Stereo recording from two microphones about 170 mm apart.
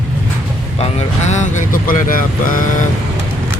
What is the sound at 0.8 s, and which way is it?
Speech, 40° left (ahead or behind).